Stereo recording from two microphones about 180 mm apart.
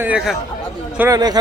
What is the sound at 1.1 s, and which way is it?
Speech, 20° right (ahead or behind).